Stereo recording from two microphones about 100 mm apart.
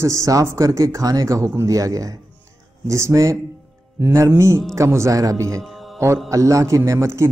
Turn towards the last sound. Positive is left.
turn(degrees=-30)  # may be behind; listen again after turning